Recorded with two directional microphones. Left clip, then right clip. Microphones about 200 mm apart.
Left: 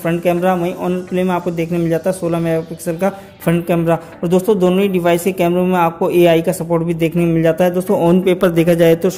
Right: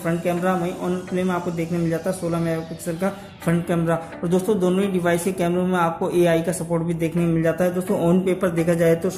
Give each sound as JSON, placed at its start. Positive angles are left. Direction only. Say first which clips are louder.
{"t": 0.0, "sound": "speech", "louder": "left 7 dB", "side_deg": 40}